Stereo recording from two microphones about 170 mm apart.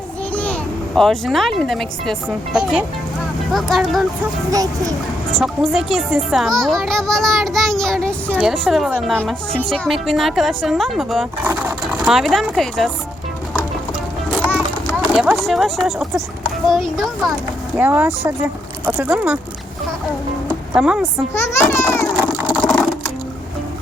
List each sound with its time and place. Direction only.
0.3 s a child's voice: 10° left (ahead or behind)
4.5 s speech: 20° right (ahead or behind)
5.3 s speech: centre (ahead or behind)
11.4 s speech: 10° right (ahead or behind)
14.5 s speech: 5° right (ahead or behind)
17.7 s speech: 10° right (ahead or behind)
20.7 s speech: 5° right (ahead or behind)
21.6 s a sound: 15° left (ahead or behind)
22.2 s a sound: 10° right (ahead or behind)